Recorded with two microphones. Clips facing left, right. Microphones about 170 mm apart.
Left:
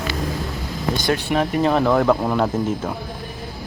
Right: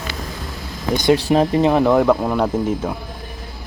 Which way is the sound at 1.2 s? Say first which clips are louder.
Right 5 dB; 35° right (ahead or behind).